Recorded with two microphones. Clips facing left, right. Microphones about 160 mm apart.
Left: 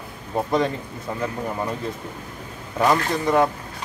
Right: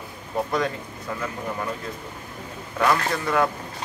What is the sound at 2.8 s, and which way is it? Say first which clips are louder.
Speech: left 3 dB; 20° left (ahead or behind).